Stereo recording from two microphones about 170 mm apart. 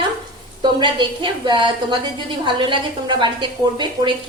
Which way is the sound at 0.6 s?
25° right (ahead or behind).